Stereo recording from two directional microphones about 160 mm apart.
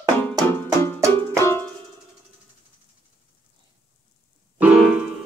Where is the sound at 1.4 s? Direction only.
15° left (ahead or behind).